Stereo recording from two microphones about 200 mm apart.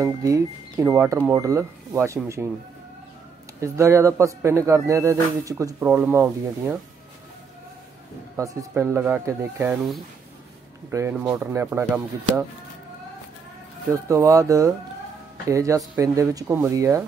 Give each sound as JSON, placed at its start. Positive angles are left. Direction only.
{"t": 0.0, "sound": "speech", "side_deg": -15}
{"t": 3.6, "sound": "speech", "side_deg": -15}
{"t": 8.4, "sound": "speech", "side_deg": -15}
{"t": 10.9, "sound": "speech", "side_deg": -10}
{"t": 13.8, "sound": "speech", "side_deg": -15}